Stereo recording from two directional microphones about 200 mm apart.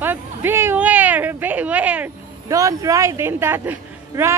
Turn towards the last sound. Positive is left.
turn(degrees=-10)  # may be behind; listen again after turning